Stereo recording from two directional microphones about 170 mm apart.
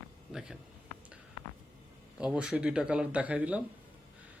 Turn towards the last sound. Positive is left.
turn(degrees=-10)  # may be behind; listen again after turning